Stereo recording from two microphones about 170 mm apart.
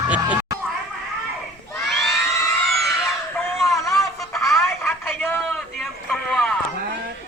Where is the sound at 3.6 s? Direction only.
Centre (ahead or behind).